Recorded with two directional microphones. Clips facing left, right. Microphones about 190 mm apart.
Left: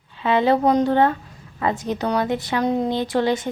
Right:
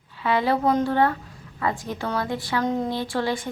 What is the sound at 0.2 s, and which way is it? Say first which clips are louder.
Speech: left 4 dB; 25° left (ahead or behind).